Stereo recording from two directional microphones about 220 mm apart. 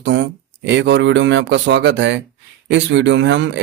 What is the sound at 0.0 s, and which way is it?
Speech, 55° right (ahead or behind).